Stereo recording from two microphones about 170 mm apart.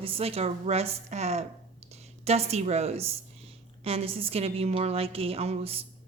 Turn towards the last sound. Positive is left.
turn(degrees=-35)  # may be behind; listen again after turning